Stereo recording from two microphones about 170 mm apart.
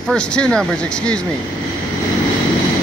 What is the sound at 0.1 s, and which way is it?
Speech, 5° left (ahead or behind).